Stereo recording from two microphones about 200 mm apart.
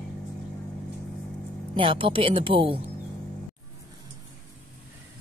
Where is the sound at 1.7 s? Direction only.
25° right (ahead or behind).